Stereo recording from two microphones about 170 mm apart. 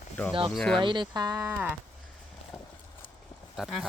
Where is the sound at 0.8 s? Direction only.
25° right (ahead or behind).